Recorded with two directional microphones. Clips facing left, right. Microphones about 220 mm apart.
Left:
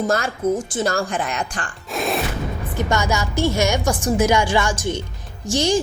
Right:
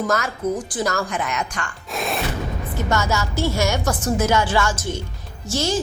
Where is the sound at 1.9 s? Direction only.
Centre (ahead or behind).